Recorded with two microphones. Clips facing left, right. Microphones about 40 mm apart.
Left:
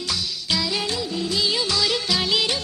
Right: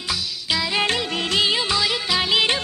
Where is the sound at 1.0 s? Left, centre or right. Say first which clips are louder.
Right 3 dB; right.